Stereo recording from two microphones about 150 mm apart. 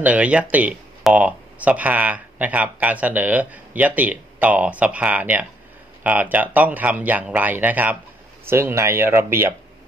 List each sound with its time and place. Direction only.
0.0 s speech: 10° right (ahead or behind)